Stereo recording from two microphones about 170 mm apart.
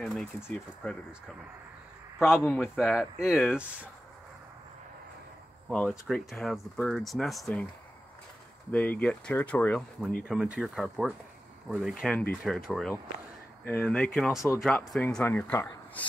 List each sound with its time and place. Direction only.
0.0 s speech: centre (ahead or behind)
2.1 s a man's voice: 5° right (ahead or behind)
2.4 s speech: 10° left (ahead or behind)
2.7 s speech: centre (ahead or behind)
5.9 s speech: centre (ahead or behind)
8.7 s speech: 5° left (ahead or behind)